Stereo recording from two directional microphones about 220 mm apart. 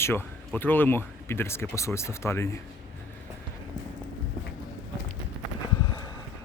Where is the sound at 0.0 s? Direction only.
10° left (ahead or behind).